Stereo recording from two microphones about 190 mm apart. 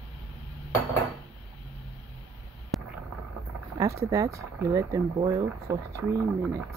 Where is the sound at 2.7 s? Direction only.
Centre (ahead or behind).